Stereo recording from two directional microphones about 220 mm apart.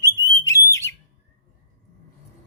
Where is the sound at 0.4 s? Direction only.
15° left (ahead or behind).